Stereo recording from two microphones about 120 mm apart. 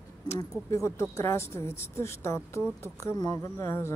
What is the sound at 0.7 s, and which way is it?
A woman's voice, 25° left (ahead or behind).